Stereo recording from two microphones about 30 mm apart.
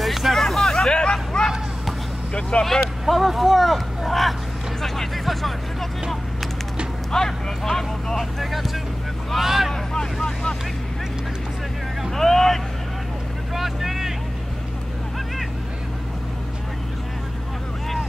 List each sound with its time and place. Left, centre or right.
0.0 s hubbub: centre
2.6 s speech: centre
4.8 s music: centre
7.1 s speech: centre
8.2 s speech: centre
12.2 s speech: centre
13.6 s vehicle: centre